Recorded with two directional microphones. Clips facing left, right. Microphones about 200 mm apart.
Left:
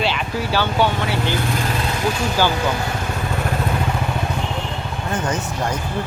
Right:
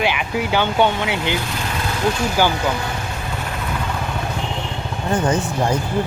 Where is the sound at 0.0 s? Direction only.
15° right (ahead or behind).